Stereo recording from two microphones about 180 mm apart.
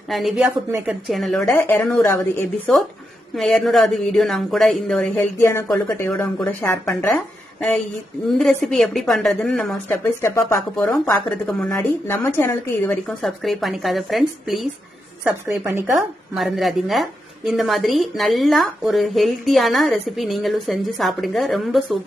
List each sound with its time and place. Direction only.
0.1 s a woman's voice: centre (ahead or behind)
0.7 s a woman's voice: 15° right (ahead or behind)
1.0 s a woman's voice: centre (ahead or behind)
3.3 s a woman's voice: centre (ahead or behind)
10.8 s a woman's voice: 5° left (ahead or behind)
13.2 s a woman's voice: centre (ahead or behind)
15.4 s a woman's voice: 10° right (ahead or behind)
15.9 s a woman's voice: centre (ahead or behind)